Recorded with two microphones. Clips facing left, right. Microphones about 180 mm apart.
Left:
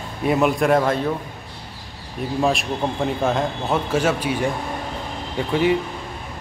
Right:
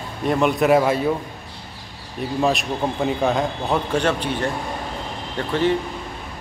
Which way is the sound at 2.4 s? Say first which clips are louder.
Even; centre (ahead or behind).